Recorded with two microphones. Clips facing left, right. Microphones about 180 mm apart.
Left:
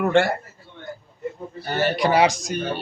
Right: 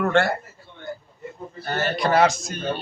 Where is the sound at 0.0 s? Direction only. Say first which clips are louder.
Left 2 dB; 15° left (ahead or behind).